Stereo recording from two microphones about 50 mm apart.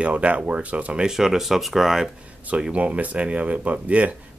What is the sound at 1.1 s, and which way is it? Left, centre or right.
Speech, centre.